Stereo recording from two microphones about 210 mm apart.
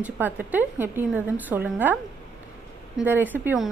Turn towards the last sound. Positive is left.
turn(degrees=-10)  # may be behind; listen again after turning